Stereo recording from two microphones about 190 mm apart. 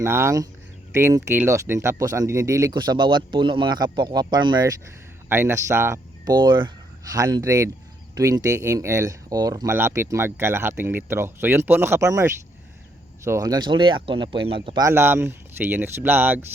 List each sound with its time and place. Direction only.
0.0 s speech: 15° right (ahead or behind)